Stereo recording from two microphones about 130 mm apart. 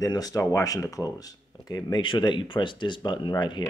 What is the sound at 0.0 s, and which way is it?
Speech, 30° left (ahead or behind).